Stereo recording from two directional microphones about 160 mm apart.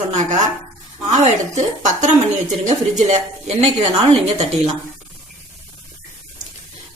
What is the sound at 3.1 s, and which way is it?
Speech, 45° right (ahead or behind).